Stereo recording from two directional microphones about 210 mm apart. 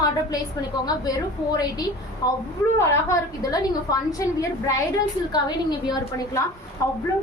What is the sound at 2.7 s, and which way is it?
A woman's voice, 15° left (ahead or behind).